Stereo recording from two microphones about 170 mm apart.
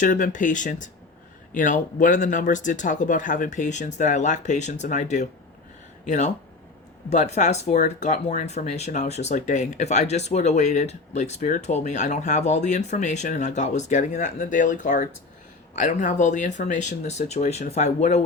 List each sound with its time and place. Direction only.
0.0 s speech: 50° left (ahead or behind)